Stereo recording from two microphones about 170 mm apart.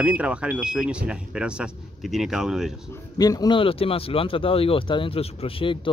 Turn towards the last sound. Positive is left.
turn(degrees=30)  # may be behind; listen again after turning